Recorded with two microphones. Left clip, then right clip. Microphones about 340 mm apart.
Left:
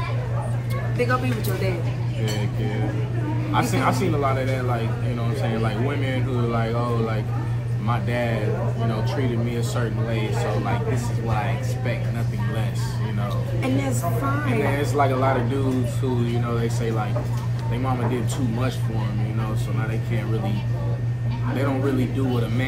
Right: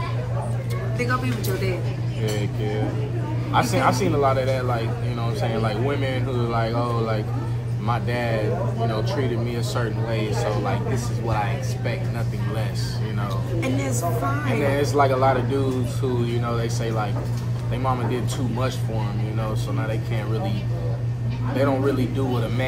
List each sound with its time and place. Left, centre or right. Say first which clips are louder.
3.5 s speech: right 2 dB; centre
9.8 s speech: right 3 dB; centre
14.7 s speech: right 4 dB; centre
21.5 s speech: right 3 dB; centre